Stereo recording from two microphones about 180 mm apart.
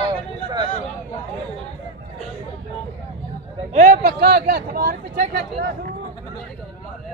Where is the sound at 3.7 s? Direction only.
50° right (ahead or behind).